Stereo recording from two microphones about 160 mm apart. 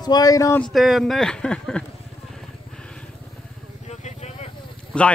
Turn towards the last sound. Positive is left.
turn(degrees=5)  # may be behind; listen again after turning